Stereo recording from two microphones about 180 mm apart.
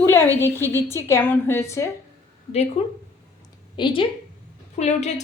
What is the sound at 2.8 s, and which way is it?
A woman's voice, 35° left (ahead or behind).